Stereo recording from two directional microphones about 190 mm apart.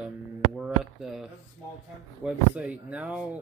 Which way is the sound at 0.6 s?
Centre (ahead or behind).